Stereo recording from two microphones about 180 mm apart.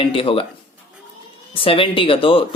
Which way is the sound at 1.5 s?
30° left (ahead or behind).